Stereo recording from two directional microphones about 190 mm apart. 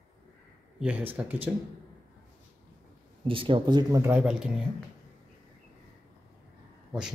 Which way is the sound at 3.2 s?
30° right (ahead or behind).